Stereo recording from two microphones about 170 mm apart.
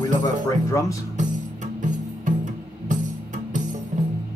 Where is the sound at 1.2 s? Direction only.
45° right (ahead or behind).